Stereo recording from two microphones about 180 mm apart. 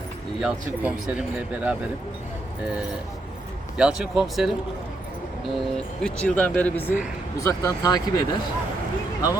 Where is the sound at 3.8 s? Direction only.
5° right (ahead or behind).